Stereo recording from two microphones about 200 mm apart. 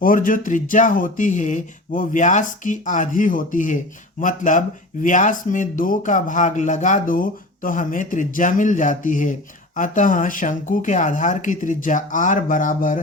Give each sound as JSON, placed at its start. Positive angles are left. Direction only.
{"t": 0.0, "sound": "speech", "side_deg": 40}